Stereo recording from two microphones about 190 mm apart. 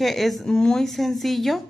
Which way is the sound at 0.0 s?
Centre (ahead or behind).